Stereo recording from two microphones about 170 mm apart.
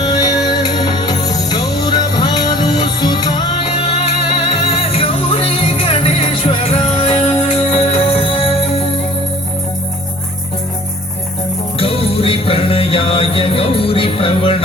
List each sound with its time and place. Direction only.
0.0 s music: 25° left (ahead or behind)
11.8 s music: 35° left (ahead or behind)